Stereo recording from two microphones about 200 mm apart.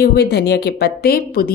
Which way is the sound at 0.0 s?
55° left (ahead or behind).